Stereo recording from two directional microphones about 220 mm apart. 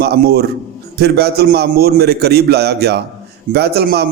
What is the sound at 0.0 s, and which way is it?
A man's voice, 45° right (ahead or behind).